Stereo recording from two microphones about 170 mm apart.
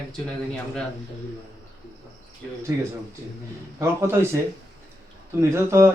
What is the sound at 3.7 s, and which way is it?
Speech, 15° right (ahead or behind).